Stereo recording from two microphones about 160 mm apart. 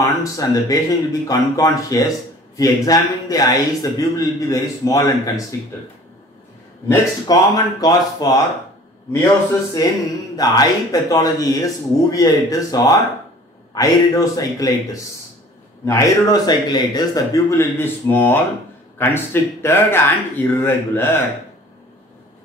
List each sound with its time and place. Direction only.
0.0 s speech: 20° left (ahead or behind)
6.9 s speech: 20° left (ahead or behind)
9.8 s speech: 20° left (ahead or behind)